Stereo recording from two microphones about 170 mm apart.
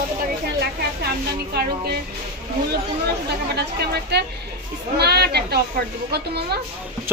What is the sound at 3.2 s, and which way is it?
A woman's voice, 75° right (ahead or behind).